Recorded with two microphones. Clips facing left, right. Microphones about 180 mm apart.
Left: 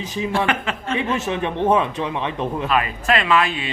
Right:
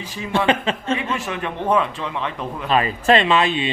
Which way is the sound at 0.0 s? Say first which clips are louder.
Left 6 dB; 20° left (ahead or behind).